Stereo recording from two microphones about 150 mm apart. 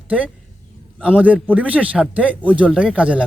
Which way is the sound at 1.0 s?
10° right (ahead or behind).